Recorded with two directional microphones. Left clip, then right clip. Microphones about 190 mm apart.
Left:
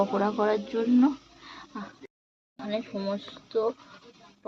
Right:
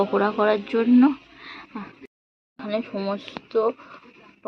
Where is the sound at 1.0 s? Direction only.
25° right (ahead or behind).